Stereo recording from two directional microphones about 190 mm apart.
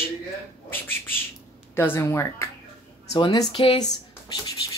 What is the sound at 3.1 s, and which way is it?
Speech, 25° left (ahead or behind).